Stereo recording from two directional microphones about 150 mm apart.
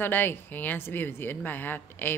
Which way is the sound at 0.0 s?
15° left (ahead or behind).